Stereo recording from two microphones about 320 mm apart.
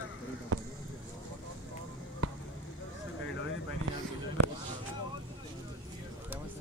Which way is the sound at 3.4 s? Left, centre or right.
Left.